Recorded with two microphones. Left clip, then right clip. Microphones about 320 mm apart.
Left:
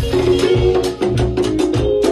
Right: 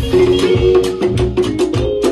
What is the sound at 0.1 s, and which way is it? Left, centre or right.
Music, right.